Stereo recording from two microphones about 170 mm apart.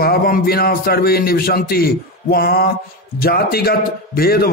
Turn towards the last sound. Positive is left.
turn(degrees=65)  # may be behind; listen again after turning